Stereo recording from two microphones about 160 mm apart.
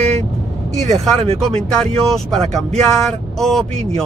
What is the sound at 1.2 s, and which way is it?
Speech, 40° right (ahead or behind).